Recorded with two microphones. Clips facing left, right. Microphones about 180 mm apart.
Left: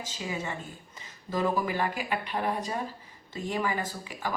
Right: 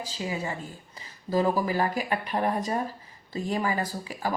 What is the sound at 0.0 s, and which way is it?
Speech, 35° right (ahead or behind).